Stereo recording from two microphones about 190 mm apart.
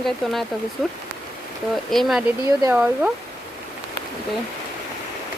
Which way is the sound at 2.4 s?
20° right (ahead or behind).